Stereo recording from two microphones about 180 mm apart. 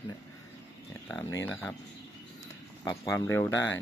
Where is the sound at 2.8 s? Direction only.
15° left (ahead or behind).